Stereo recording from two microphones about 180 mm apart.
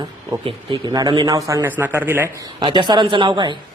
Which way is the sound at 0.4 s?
25° right (ahead or behind).